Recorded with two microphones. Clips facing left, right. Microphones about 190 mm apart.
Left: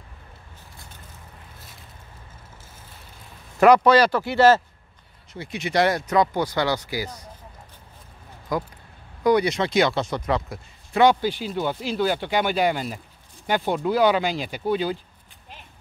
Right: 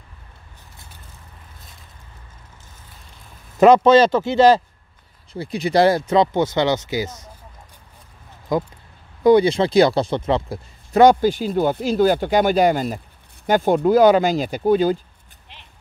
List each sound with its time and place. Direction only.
3.5 s speech: 25° right (ahead or behind)
5.3 s speech: 35° right (ahead or behind)
8.5 s speech: 25° right (ahead or behind)
10.9 s speech: 45° right (ahead or behind)